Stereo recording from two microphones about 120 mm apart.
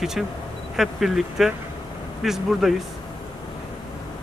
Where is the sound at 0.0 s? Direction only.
5° right (ahead or behind).